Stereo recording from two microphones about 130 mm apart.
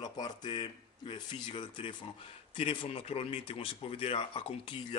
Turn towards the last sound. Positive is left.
turn(degrees=45)  # may be behind; listen again after turning